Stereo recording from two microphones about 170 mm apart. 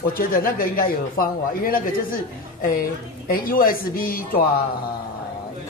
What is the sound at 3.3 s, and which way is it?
A man's voice, 60° left (ahead or behind).